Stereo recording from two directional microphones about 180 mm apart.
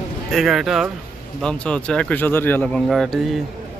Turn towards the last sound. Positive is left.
turn(degrees=0)  # may be behind; listen again after turning